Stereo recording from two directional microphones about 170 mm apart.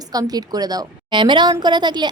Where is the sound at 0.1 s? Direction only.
25° right (ahead or behind).